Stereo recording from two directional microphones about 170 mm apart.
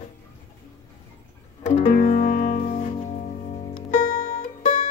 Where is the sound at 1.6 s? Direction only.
45° left (ahead or behind).